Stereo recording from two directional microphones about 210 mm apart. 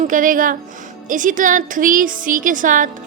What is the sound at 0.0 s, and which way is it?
A woman's voice, 40° right (ahead or behind).